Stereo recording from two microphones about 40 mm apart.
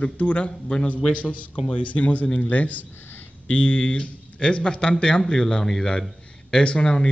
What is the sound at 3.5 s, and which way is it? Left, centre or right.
Speech, left.